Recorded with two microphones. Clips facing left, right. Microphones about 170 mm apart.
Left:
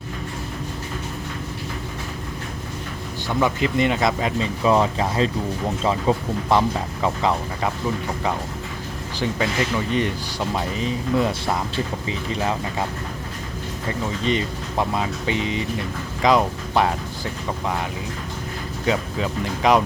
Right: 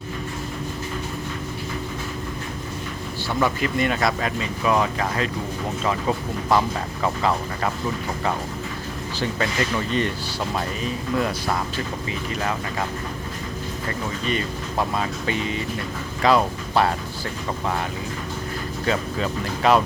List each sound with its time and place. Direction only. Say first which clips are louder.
3.2 s speech: left 2 dB; 20° left (ahead or behind)
9.1 s speech: left 2 dB; 10° left (ahead or behind)
14.3 s speech: left 3 dB; 20° left (ahead or behind)
18.9 s speech: left 1 dB; 15° left (ahead or behind)